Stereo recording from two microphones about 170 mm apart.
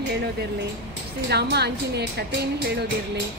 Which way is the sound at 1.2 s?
75° right (ahead or behind).